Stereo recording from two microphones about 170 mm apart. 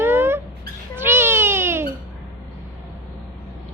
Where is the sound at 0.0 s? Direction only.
15° right (ahead or behind).